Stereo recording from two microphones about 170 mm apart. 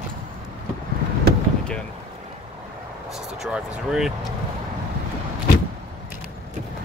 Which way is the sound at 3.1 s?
Centre (ahead or behind).